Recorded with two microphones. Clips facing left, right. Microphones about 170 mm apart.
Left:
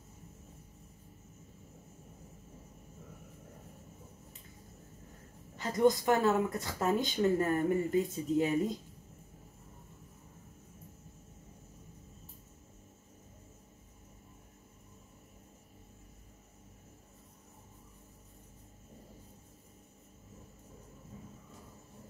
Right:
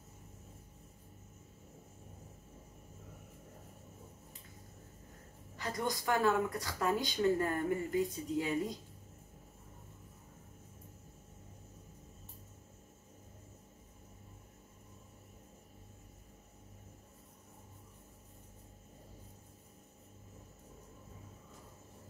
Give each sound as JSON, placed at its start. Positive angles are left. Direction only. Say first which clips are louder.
{"t": 5.6, "sound": "speech", "louder": "left 10 dB", "side_deg": 20}